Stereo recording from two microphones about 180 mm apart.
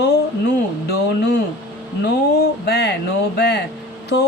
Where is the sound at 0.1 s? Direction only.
65° left (ahead or behind).